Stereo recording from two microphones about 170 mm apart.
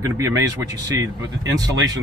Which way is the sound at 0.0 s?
20° right (ahead or behind).